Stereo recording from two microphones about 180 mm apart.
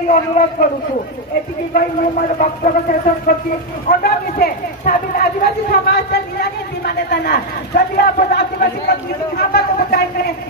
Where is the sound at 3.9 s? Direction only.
55° left (ahead or behind).